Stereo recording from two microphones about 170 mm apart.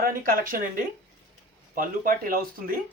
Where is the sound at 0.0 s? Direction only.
55° right (ahead or behind).